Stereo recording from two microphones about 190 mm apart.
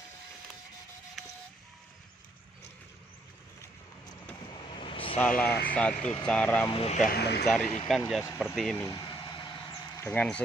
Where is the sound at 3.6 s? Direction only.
20° left (ahead or behind).